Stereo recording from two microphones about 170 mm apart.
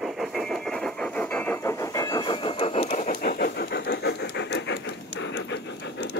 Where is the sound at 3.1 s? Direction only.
65° left (ahead or behind).